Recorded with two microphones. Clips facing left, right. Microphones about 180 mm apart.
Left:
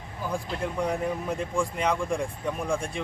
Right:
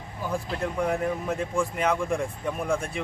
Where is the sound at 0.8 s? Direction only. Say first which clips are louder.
Right 2 dB; 5° right (ahead or behind).